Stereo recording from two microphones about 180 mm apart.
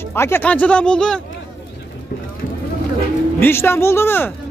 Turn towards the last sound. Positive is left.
turn(degrees=10)  # may be behind; listen again after turning